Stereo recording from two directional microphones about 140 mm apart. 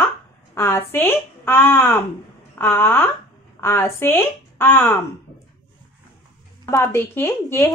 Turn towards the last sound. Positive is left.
turn(degrees=15)  # may be behind; listen again after turning